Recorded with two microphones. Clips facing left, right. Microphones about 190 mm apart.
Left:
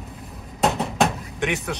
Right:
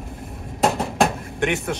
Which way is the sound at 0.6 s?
Centre (ahead or behind).